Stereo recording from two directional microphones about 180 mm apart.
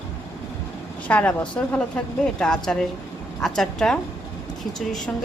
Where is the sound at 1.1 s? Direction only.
10° left (ahead or behind).